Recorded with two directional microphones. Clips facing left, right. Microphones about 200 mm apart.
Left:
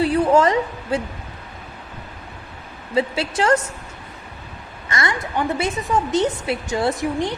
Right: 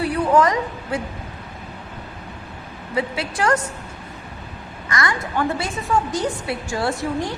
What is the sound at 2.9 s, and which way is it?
Speech, 25° left (ahead or behind).